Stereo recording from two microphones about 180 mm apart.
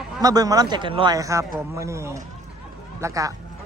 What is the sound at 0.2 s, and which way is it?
A man's voice, 20° right (ahead or behind).